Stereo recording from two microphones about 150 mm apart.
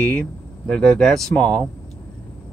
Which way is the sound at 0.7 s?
5° left (ahead or behind).